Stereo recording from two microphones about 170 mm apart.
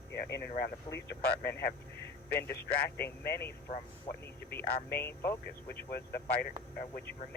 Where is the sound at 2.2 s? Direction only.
10° left (ahead or behind).